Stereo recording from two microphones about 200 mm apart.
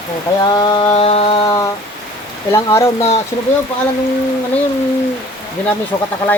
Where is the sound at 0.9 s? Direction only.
30° left (ahead or behind).